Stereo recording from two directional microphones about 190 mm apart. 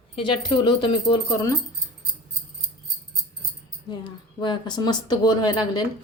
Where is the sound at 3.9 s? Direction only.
25° left (ahead or behind).